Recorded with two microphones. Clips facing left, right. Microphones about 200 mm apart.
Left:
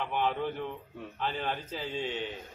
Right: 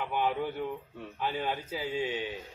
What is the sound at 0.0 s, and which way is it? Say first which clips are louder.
A man's voice: even; 10° right (ahead or behind).